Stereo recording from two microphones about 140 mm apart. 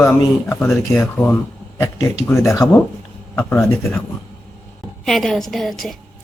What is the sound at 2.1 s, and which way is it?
Speech, 20° left (ahead or behind).